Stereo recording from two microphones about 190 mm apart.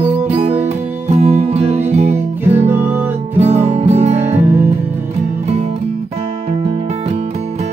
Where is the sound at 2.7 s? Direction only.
10° right (ahead or behind).